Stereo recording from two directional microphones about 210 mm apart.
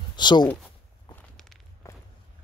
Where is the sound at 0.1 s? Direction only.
20° left (ahead or behind).